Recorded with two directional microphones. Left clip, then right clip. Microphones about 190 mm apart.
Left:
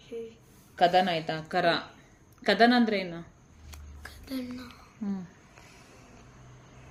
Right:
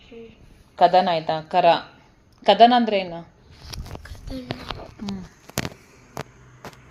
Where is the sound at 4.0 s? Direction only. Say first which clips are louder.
Right 2 dB; 35° left (ahead or behind).